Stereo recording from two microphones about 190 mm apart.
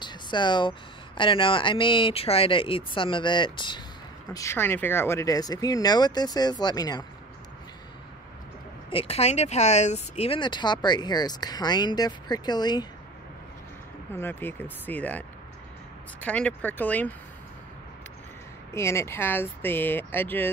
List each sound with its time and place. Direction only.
0.0 s speech: 25° left (ahead or behind)
8.9 s speech: 30° left (ahead or behind)
14.1 s speech: 10° left (ahead or behind)
18.7 s speech: 15° left (ahead or behind)